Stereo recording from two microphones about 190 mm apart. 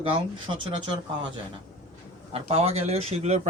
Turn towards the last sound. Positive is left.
turn(degrees=-35)  # may be behind; listen again after turning